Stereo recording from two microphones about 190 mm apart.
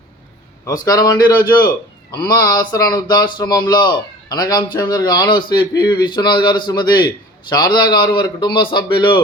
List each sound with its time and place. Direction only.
0.9 s speech: 20° left (ahead or behind)